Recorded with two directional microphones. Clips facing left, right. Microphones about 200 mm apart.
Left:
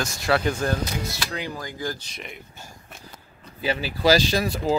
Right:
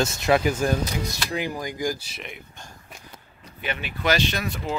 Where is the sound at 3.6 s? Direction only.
35° left (ahead or behind).